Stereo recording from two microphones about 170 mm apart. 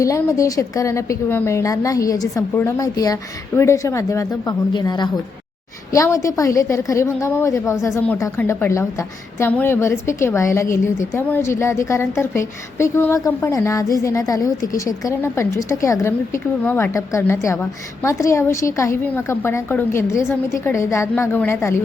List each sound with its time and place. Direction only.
0.0 s a woman's voice: 20° left (ahead or behind)